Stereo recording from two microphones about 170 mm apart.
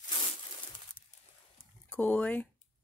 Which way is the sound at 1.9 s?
10° left (ahead or behind).